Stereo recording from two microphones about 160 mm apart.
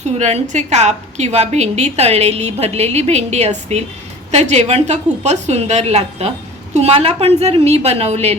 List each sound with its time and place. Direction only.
0.0 s a woman's voice: 45° right (ahead or behind)